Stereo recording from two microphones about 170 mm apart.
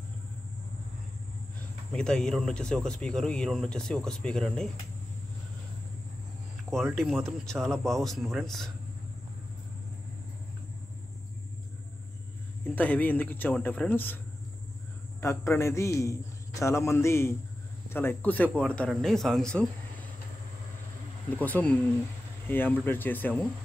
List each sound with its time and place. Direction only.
1.9 s speech: 5° left (ahead or behind)
6.7 s speech: centre (ahead or behind)
12.7 s a man's voice: 10° left (ahead or behind)
15.1 s a man's voice: 15° left (ahead or behind)
21.3 s a man's voice: 10° left (ahead or behind)